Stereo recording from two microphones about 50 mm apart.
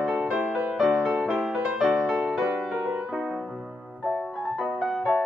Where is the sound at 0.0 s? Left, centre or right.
Centre.